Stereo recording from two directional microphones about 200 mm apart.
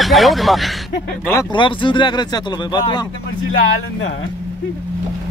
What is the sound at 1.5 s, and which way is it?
Speech, 25° left (ahead or behind).